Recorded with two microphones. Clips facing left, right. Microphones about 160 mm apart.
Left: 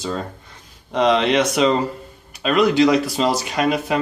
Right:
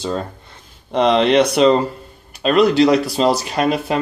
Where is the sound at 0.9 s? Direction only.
35° right (ahead or behind).